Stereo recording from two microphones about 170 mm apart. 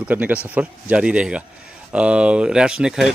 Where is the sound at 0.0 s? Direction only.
10° right (ahead or behind).